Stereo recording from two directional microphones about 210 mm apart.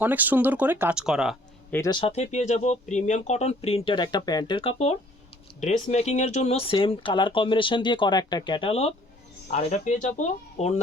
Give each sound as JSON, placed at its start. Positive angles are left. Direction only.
{"t": 0.0, "sound": "speech", "side_deg": -10}
{"t": 1.7, "sound": "speech", "side_deg": 15}